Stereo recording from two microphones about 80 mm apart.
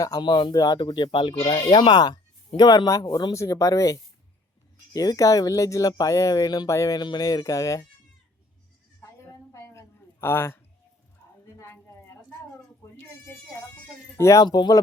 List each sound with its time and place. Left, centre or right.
0.2 s speech: left
0.5 s speech: left
6.7 s speech: left
7.0 s speech: left
9.0 s a sound: left
11.6 s a sound: left
14.2 s speech: left
14.4 s speech: left